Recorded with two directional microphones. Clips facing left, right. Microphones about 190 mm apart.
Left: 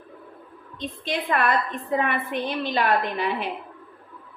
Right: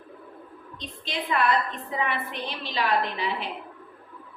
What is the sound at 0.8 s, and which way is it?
A woman's voice, 55° left (ahead or behind).